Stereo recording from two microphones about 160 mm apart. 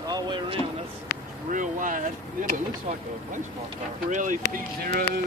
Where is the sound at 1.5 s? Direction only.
55° right (ahead or behind).